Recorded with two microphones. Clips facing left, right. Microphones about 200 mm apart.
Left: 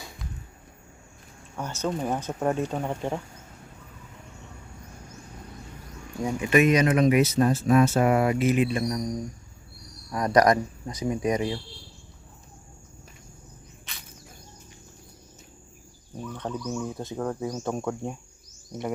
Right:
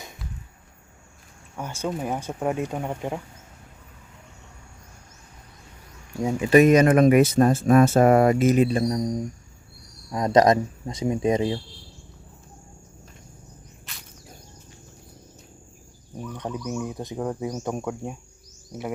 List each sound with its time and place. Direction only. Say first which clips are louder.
1.5 s speech: even; 10° right (ahead or behind)
6.2 s speech: right 5 dB; 30° right (ahead or behind)
13.9 s cricket: even; centre (ahead or behind)
16.1 s a sound: right 1 dB; 10° right (ahead or behind)
16.6 s speech: right 1 dB; 15° right (ahead or behind)